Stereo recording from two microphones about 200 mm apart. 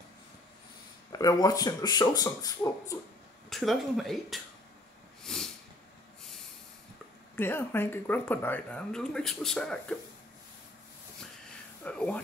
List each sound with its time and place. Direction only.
1.1 s speech: 20° left (ahead or behind)
3.4 s speech: centre (ahead or behind)
5.2 s snort: centre (ahead or behind)
7.3 s speech: 10° left (ahead or behind)
11.8 s a sound: 5° left (ahead or behind)